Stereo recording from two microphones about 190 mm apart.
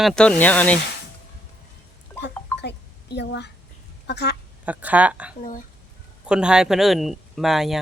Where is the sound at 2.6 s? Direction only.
60° left (ahead or behind).